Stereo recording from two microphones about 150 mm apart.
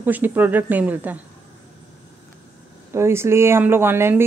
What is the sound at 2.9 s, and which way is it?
A woman's voice, 15° right (ahead or behind).